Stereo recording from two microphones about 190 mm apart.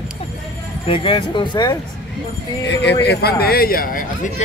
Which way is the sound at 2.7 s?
65° left (ahead or behind).